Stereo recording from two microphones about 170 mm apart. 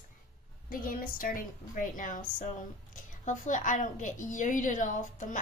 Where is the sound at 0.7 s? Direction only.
55° left (ahead or behind).